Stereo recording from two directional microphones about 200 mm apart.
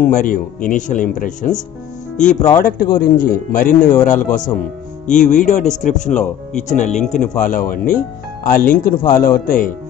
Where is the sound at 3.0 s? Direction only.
45° left (ahead or behind).